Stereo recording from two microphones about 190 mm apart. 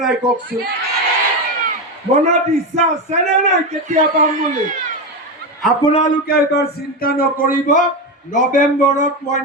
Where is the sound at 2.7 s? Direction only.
35° right (ahead or behind).